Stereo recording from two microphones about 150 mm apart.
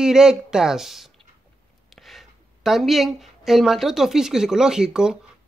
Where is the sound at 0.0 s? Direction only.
5° right (ahead or behind).